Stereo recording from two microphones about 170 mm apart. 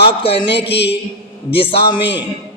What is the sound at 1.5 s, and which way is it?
Speech, 30° left (ahead or behind).